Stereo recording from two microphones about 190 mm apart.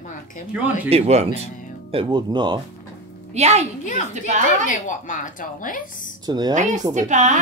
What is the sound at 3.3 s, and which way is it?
A woman's voice, 35° right (ahead or behind).